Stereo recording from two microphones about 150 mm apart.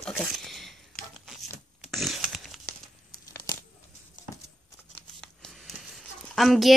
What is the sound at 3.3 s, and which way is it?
Tearing, 20° left (ahead or behind).